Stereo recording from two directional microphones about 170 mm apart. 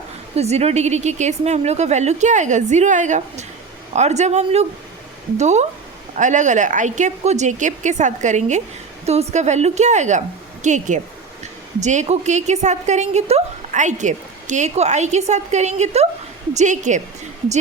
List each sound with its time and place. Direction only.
0.3 s a woman's voice: 40° right (ahead or behind)